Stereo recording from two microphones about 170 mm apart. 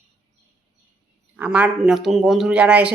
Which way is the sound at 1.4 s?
10° right (ahead or behind).